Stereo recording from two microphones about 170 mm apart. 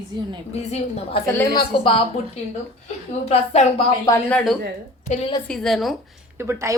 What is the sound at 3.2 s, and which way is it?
Speech, 35° left (ahead or behind).